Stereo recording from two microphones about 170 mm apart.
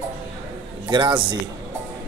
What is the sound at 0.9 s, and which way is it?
Speech, 25° right (ahead or behind).